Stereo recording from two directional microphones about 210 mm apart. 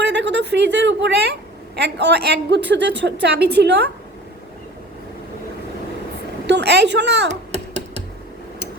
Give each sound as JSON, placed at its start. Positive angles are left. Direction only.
{"t": 0.0, "sound": "a woman's voice", "side_deg": -55}
{"t": 6.5, "sound": "speech", "side_deg": -55}